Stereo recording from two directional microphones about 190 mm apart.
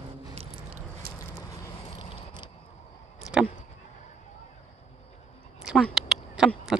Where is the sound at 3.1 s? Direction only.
Centre (ahead or behind).